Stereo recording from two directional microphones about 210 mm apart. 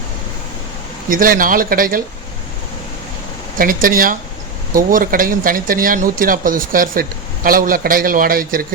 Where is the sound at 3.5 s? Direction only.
40° right (ahead or behind).